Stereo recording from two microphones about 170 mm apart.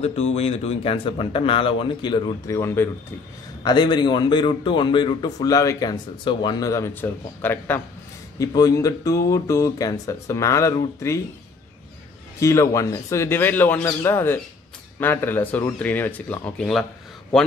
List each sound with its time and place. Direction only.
0.0 s a man's voice: 40° left (ahead or behind); by 11.1 s 20° left (ahead or behind)
12.4 s speech: 20° left (ahead or behind)